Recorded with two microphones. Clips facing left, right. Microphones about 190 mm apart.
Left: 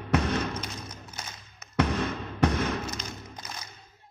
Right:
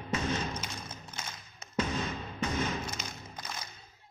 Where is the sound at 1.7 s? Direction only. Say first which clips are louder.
Left 6 dB; 65° left (ahead or behind).